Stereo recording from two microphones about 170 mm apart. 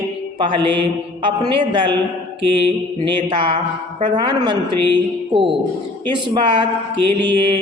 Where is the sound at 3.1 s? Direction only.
30° right (ahead or behind).